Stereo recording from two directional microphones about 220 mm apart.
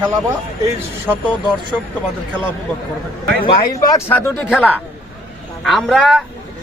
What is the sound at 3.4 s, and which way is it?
A man's voice, 15° left (ahead or behind).